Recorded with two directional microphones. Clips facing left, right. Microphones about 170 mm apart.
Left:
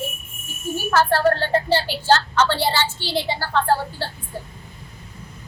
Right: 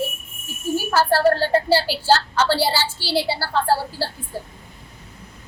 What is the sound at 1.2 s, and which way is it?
Speech, 35° right (ahead or behind).